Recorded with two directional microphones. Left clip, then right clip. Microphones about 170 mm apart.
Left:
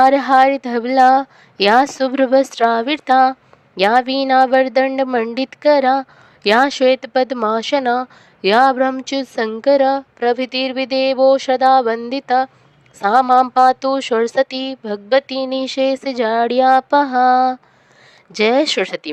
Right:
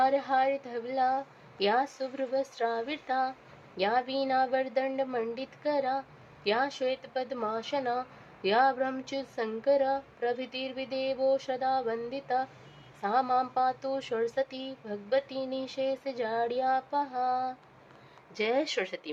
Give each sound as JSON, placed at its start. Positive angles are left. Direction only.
{"t": 0.0, "sound": "speech", "side_deg": 50}